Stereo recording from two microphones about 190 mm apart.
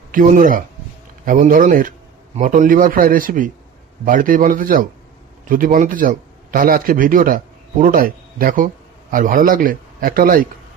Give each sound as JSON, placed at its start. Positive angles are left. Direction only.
{"t": 0.1, "sound": "a man's voice", "side_deg": -45}